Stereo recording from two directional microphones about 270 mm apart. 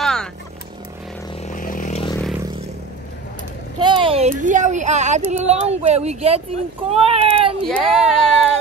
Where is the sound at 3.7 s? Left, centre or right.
Centre.